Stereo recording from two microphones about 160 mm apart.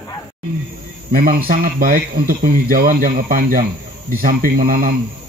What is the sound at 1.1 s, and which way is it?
Speech, 65° right (ahead or behind).